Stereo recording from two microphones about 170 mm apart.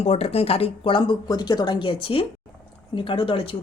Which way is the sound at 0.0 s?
40° left (ahead or behind).